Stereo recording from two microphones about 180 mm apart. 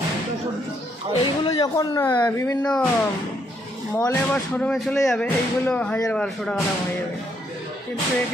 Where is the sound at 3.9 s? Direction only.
15° left (ahead or behind).